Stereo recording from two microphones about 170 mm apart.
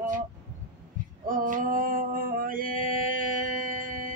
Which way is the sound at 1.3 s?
50° right (ahead or behind).